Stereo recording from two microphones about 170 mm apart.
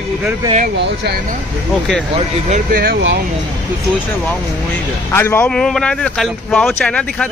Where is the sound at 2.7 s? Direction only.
65° right (ahead or behind).